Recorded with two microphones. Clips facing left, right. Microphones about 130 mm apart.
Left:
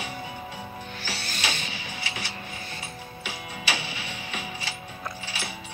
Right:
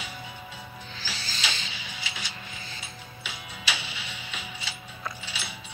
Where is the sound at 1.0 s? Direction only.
60° left (ahead or behind).